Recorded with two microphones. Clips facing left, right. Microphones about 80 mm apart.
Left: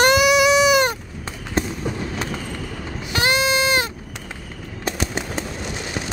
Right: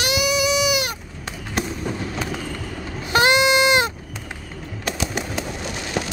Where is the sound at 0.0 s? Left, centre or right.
Left.